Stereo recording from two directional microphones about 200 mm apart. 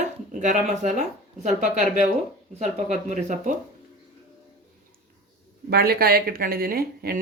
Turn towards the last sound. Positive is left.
turn(degrees=-50)  # may be behind; listen again after turning